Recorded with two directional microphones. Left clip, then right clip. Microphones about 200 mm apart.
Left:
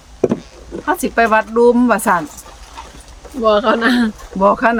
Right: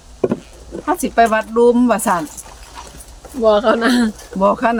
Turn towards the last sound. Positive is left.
turn(degrees=5)  # may be behind; listen again after turning